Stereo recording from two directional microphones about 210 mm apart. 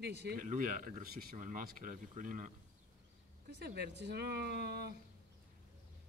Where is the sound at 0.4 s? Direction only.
40° right (ahead or behind).